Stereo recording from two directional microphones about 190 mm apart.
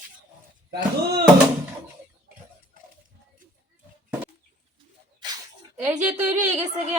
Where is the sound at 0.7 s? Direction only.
50° right (ahead or behind).